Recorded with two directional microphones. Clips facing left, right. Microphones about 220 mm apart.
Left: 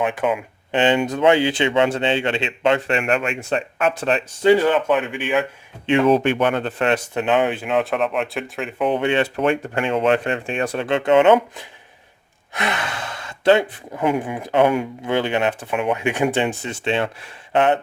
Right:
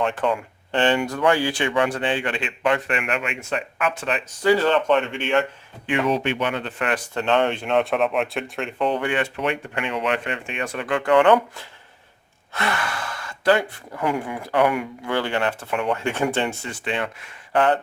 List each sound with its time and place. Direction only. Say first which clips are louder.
0.0 s speech: left 2 dB; 15° left (ahead or behind); by 4.5 s 30° left (ahead or behind)
4.5 s speech: left 2 dB; 10° left (ahead or behind)
6.1 s speech: left 6 dB; 50° left (ahead or behind)
6.8 s speech: left 3 dB; 20° left (ahead or behind)
7.3 s speech: even; 5° left (ahead or behind)
8.9 s speech: left 6 dB; 25° left (ahead or behind)
9.3 s speech: left 6 dB; 45° left (ahead or behind)
9.8 s speech: left 6 dB; 30° left (ahead or behind)